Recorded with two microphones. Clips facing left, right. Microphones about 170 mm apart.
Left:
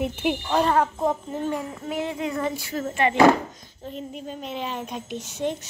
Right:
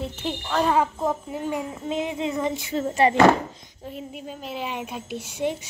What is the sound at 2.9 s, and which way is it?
Speech, 35° right (ahead or behind).